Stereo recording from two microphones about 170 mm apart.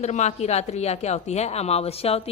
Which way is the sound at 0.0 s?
40° left (ahead or behind).